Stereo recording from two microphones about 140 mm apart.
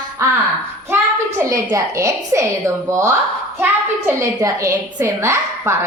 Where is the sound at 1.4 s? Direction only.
20° right (ahead or behind).